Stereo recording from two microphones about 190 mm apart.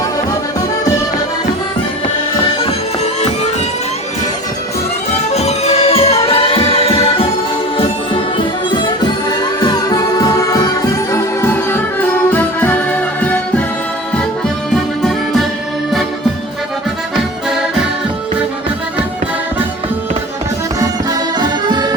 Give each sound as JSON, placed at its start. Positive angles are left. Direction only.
{"t": 2.6, "sound": "music", "side_deg": 35}
{"t": 5.3, "sound": "music", "side_deg": 35}
{"t": 8.7, "sound": "music", "side_deg": 20}
{"t": 15.0, "sound": "music", "side_deg": 0}
{"t": 21.3, "sound": "music", "side_deg": -20}